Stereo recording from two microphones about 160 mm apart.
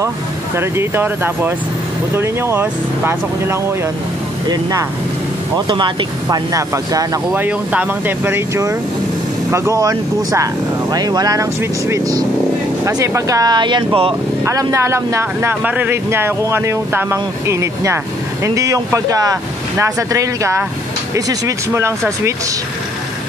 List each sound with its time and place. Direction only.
0.6 s speech: 15° right (ahead or behind)
5.7 s speech: 25° right (ahead or behind)
14.4 s speech: 20° right (ahead or behind)